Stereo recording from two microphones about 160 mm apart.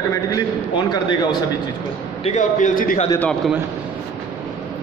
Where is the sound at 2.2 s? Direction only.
50° left (ahead or behind).